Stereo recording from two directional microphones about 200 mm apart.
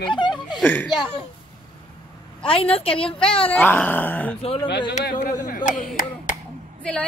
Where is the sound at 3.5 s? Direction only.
5° left (ahead or behind).